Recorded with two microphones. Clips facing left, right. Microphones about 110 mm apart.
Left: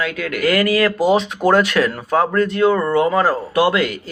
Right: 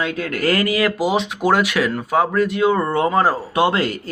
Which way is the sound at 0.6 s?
20° right (ahead or behind).